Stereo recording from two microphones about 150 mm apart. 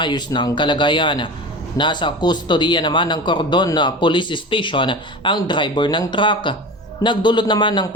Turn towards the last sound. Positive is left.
turn(degrees=30)  # may be behind; listen again after turning